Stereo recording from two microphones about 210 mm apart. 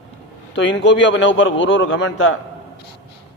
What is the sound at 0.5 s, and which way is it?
A man's voice, 60° left (ahead or behind).